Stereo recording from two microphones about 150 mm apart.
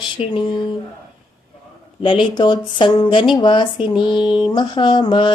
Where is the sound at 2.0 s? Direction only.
35° left (ahead or behind).